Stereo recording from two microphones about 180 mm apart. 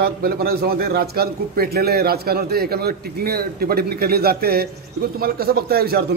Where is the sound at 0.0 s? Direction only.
60° right (ahead or behind).